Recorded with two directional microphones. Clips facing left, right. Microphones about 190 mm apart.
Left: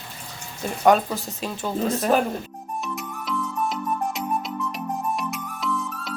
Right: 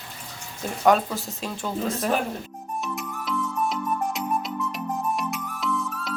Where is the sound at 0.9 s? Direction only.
Centre (ahead or behind).